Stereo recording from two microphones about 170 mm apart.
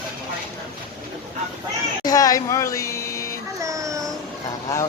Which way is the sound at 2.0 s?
20° left (ahead or behind).